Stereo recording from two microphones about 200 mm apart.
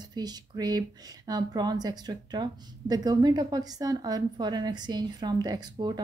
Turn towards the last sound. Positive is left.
turn(degrees=-20)  # may be behind; listen again after turning